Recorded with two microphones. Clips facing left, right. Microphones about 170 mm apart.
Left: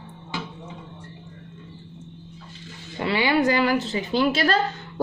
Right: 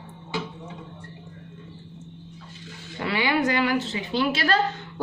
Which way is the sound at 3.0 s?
25° left (ahead or behind).